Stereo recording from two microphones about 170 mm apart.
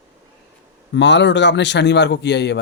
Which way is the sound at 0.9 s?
90° left.